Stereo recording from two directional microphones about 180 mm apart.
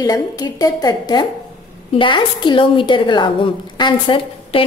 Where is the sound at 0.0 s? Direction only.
20° left (ahead or behind).